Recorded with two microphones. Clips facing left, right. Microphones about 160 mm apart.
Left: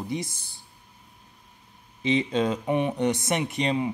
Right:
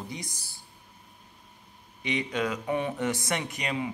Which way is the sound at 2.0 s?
25° left (ahead or behind).